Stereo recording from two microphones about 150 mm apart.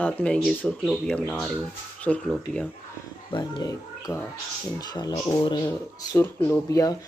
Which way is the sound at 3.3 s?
30° left (ahead or behind).